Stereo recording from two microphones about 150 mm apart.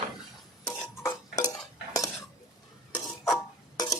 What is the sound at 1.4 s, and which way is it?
Dishes, 25° left (ahead or behind).